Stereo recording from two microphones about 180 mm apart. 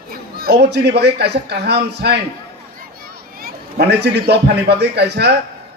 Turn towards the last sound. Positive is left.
turn(degrees=-65)  # may be behind; listen again after turning